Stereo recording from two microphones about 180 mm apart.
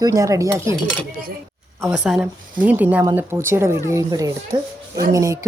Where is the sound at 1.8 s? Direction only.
Centre (ahead or behind).